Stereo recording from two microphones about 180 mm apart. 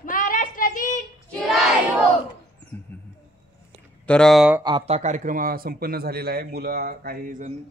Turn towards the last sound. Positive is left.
turn(degrees=-45)  # may be behind; listen again after turning